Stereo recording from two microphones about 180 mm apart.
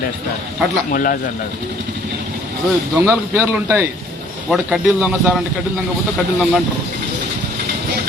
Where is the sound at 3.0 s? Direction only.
10° right (ahead or behind).